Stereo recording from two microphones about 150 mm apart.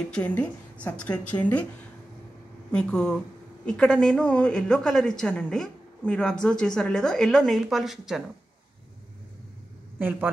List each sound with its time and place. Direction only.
0.1 s speech: 10° left (ahead or behind)
2.7 s a woman's voice: 5° left (ahead or behind)
9.9 s a man's voice: 15° right (ahead or behind)